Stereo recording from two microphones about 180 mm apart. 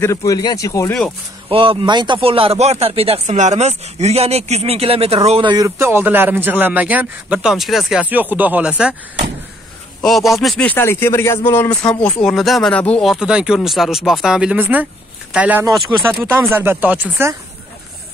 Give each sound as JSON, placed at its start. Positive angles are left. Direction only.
{"t": 0.0, "sound": "speech", "side_deg": 15}
{"t": 1.5, "sound": "speech", "side_deg": -30}
{"t": 10.0, "sound": "speech", "side_deg": 0}
{"t": 15.9, "sound": "speech", "side_deg": -20}
{"t": 16.5, "sound": "speech", "side_deg": -10}